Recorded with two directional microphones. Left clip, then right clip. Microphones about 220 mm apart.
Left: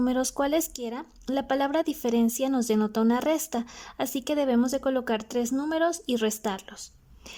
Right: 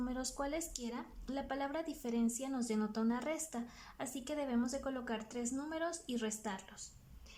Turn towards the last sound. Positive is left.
turn(degrees=40)  # may be behind; listen again after turning